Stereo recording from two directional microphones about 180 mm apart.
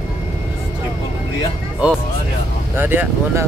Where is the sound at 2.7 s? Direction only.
10° right (ahead or behind).